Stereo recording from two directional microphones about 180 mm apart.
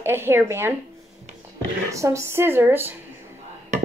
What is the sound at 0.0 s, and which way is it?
Speech, 15° right (ahead or behind).